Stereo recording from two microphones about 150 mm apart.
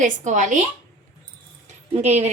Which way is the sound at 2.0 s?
50° right (ahead or behind).